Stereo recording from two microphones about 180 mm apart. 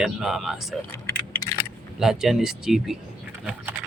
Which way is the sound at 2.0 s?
Centre (ahead or behind).